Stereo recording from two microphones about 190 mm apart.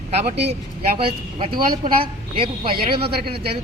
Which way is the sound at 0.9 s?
30° right (ahead or behind).